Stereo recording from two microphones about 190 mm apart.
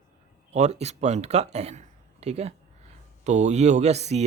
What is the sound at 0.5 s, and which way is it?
Speech, 35° right (ahead or behind).